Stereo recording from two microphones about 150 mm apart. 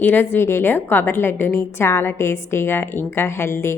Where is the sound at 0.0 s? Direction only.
15° left (ahead or behind).